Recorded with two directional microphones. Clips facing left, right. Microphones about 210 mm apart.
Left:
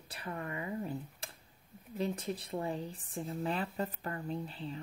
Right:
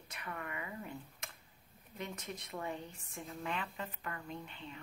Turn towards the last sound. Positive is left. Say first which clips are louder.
# left 7 dB
turn(degrees=35)  # may be behind; listen again after turning